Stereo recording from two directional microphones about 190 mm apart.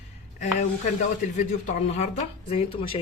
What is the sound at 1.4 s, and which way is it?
Speech, 40° left (ahead or behind).